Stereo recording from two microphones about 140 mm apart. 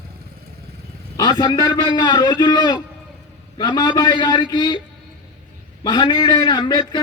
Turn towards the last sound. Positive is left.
turn(degrees=30)  # may be behind; listen again after turning